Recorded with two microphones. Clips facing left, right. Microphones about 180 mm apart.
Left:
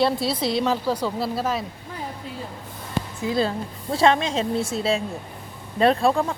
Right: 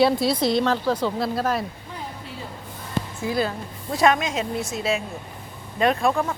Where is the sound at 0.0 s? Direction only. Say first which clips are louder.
Right 3 dB; centre (ahead or behind).